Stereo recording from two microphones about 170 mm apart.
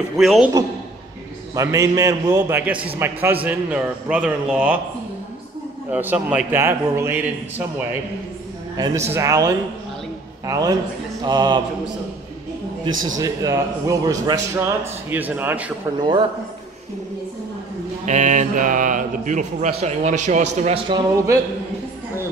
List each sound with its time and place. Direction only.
0.2 s a man's voice: centre (ahead or behind)
1.5 s a man's voice: 20° right (ahead or behind)
5.9 s a man's voice: 10° right (ahead or behind)
8.7 s a man's voice: 20° right (ahead or behind)
9.1 s music: 20° right (ahead or behind)
13.2 s a man's voice: 20° right (ahead or behind)
16.0 s music: 25° right (ahead or behind)
18.0 s a man's voice: 45° right (ahead or behind)
20.9 s music: 20° right (ahead or behind)